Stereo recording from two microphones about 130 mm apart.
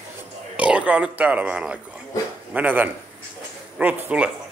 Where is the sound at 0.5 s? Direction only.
10° right (ahead or behind).